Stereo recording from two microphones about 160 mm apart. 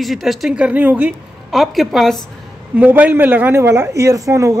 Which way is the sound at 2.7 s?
10° right (ahead or behind).